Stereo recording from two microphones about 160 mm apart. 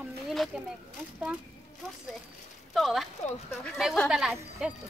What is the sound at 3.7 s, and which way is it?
Speech, centre (ahead or behind).